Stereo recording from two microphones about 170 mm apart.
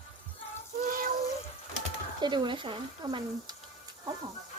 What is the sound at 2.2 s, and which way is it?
Speech, 25° right (ahead or behind).